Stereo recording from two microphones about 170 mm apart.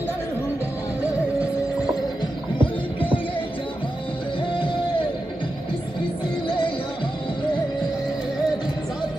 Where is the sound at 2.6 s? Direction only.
30° left (ahead or behind).